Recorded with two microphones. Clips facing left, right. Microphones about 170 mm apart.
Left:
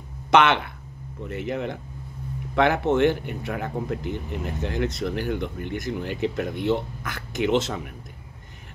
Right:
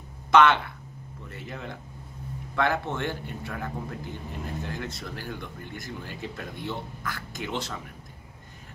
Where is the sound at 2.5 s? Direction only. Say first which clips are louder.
Left 7 dB; 20° left (ahead or behind).